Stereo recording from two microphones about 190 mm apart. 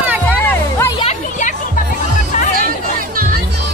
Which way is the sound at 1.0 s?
35° left (ahead or behind).